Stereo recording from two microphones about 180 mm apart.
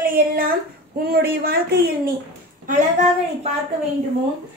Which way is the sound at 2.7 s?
40° right (ahead or behind).